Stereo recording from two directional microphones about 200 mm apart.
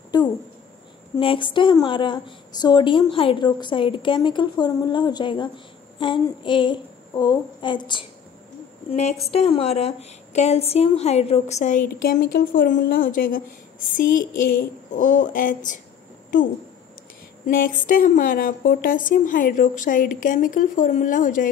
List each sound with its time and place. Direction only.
0.1 s a woman's voice: 20° left (ahead or behind)
9.3 s a woman's voice: 30° left (ahead or behind)
17.5 s a woman's voice: 45° left (ahead or behind)